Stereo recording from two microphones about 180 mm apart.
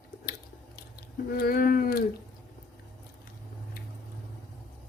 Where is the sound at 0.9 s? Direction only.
55° left (ahead or behind).